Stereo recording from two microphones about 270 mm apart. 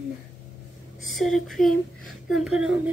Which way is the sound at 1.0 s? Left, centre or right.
Centre.